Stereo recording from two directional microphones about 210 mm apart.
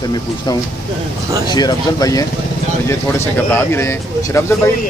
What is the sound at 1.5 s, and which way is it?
Speech, 20° left (ahead or behind).